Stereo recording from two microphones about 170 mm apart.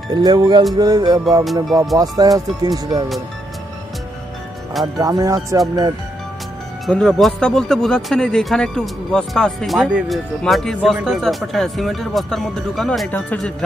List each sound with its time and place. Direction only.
0.1 s speech: 25° right (ahead or behind)
1.4 s speech: centre (ahead or behind)
2.0 s speech: 20° right (ahead or behind)
4.9 s speech: 20° right (ahead or behind)
6.9 s speech: 5° left (ahead or behind)